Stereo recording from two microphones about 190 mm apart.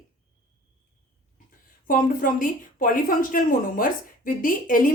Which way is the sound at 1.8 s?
45° left (ahead or behind).